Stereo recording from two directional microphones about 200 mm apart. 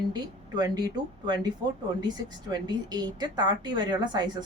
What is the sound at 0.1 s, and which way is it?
A woman's voice, 20° right (ahead or behind).